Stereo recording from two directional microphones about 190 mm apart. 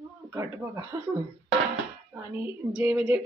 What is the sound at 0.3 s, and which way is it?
Speech, 10° right (ahead or behind).